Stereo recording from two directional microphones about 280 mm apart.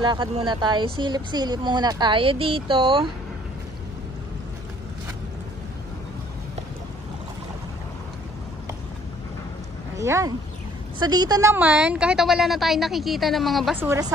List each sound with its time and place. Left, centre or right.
0.0 s speech: centre
9.9 s a woman's voice: centre